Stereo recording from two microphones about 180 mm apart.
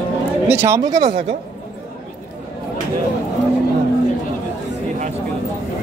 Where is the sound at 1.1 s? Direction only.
40° right (ahead or behind).